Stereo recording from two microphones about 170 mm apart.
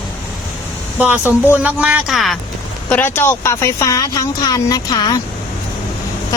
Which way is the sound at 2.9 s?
10° left (ahead or behind).